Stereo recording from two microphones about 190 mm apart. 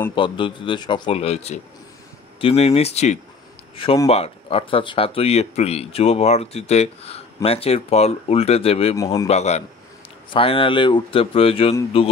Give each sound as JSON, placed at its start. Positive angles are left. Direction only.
{"t": 0.1, "sound": "speech", "side_deg": 25}
{"t": 8.9, "sound": "speech", "side_deg": 20}
{"t": 9.3, "sound": "speech", "side_deg": 35}